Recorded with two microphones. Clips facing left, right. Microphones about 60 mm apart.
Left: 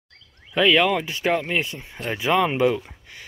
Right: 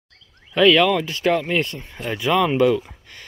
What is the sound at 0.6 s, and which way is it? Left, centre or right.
Speech, centre.